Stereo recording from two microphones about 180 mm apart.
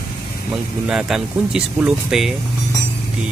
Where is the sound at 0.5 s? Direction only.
5° right (ahead or behind).